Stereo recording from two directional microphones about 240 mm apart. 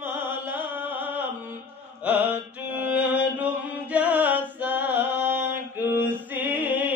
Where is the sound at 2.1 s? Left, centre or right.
Centre.